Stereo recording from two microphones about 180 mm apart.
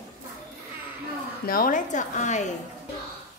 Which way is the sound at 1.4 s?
50° left (ahead or behind).